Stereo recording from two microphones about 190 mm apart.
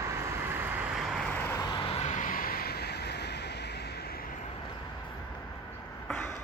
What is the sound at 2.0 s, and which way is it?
Vehicle, 45° left (ahead or behind).